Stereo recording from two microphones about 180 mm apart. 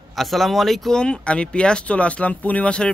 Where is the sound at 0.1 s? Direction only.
Centre (ahead or behind).